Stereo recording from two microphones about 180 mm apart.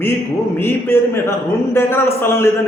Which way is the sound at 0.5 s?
10° left (ahead or behind).